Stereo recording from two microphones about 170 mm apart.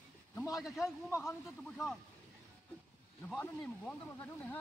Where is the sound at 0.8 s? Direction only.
15° left (ahead or behind).